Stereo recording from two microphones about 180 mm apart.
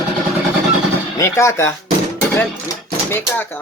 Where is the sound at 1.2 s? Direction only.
15° left (ahead or behind).